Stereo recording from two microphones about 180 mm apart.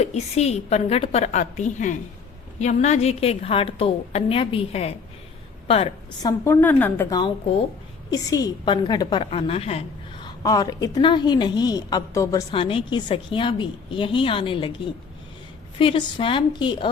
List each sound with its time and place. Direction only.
0.0 s a woman's voice: 35° left (ahead or behind)
6.4 s a woman's voice: 10° left (ahead or behind)
12.5 s a woman's voice: 30° left (ahead or behind)
15.8 s a woman's voice: 30° left (ahead or behind)